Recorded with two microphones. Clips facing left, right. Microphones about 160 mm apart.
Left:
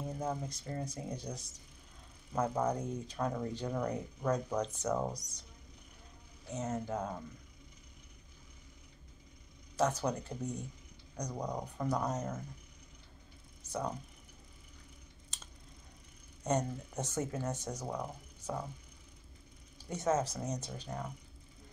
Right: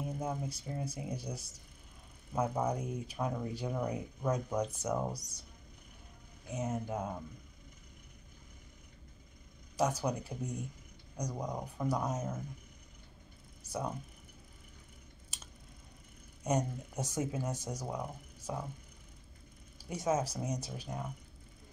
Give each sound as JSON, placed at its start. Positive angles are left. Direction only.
{"t": 0.0, "sound": "speech", "side_deg": -10}
{"t": 6.5, "sound": "speech", "side_deg": -10}
{"t": 9.8, "sound": "speech", "side_deg": -10}
{"t": 13.7, "sound": "speech", "side_deg": -10}
{"t": 15.3, "sound": "scissors", "side_deg": -10}
{"t": 16.4, "sound": "speech", "side_deg": -10}
{"t": 19.8, "sound": "speech", "side_deg": -10}